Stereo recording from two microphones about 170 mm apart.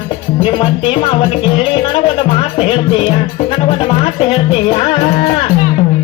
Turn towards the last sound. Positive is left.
turn(degrees=30)  # may be behind; listen again after turning